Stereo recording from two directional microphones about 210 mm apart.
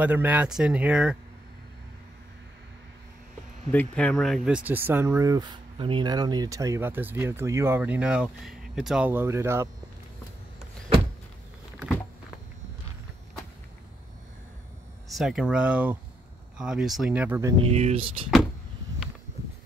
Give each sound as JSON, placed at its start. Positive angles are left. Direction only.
{"t": 0.0, "sound": "speech", "side_deg": -10}
{"t": 3.7, "sound": "speech", "side_deg": 5}
{"t": 15.0, "sound": "speech", "side_deg": 0}
{"t": 17.6, "sound": "speech", "side_deg": -30}